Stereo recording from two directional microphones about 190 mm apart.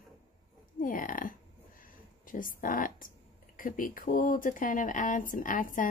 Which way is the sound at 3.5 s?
45° left (ahead or behind).